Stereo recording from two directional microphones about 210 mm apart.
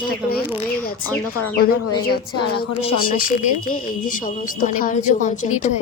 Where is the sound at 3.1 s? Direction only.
40° left (ahead or behind).